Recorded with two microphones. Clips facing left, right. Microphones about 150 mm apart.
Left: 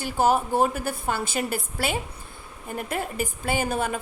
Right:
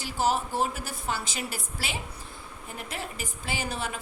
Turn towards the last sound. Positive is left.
turn(degrees=50)  # may be behind; listen again after turning